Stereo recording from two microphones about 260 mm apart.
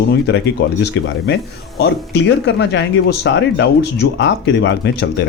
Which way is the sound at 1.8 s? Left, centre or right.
Left.